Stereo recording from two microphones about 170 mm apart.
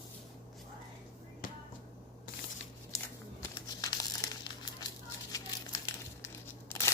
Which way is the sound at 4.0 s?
15° left (ahead or behind).